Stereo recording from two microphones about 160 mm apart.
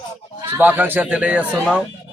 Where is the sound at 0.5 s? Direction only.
10° right (ahead or behind).